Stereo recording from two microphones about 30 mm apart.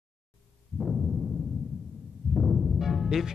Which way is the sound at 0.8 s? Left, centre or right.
Centre.